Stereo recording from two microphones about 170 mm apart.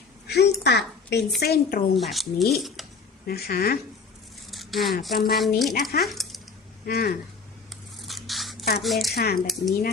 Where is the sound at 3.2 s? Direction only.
65° left (ahead or behind).